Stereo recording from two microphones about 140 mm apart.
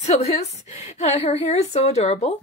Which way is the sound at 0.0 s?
50° left (ahead or behind).